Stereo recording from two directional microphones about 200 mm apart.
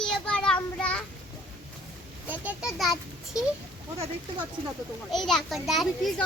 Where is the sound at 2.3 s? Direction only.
5° right (ahead or behind).